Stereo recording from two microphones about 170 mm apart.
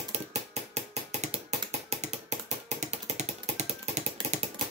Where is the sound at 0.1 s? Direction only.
40° right (ahead or behind).